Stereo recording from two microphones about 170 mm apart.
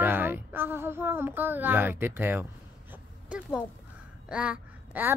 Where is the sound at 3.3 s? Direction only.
5° right (ahead or behind).